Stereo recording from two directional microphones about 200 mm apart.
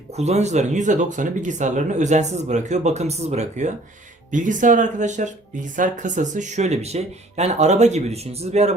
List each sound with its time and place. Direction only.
0.2 s speech: 35° right (ahead or behind)